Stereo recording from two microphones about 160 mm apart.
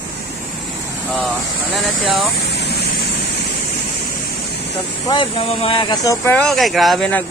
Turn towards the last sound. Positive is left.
turn(degrees=5)  # may be behind; listen again after turning